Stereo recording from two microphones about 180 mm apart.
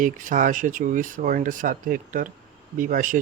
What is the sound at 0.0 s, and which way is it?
Speech, 50° right (ahead or behind).